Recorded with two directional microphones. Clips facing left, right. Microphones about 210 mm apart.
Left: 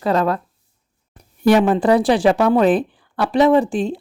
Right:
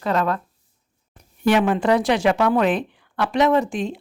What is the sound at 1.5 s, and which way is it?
A woman's voice, 35° left (ahead or behind).